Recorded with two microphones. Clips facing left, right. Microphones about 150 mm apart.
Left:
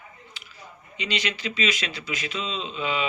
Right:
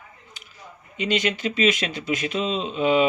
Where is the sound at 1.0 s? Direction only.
50° right (ahead or behind).